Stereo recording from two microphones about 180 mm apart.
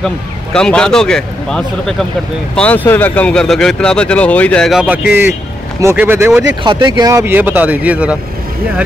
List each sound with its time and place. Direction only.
0.0 s speech: 5° left (ahead or behind); by 6.4 s 10° right (ahead or behind)
6.6 s speech: 25° right (ahead or behind); by 8.2 s 5° right (ahead or behind)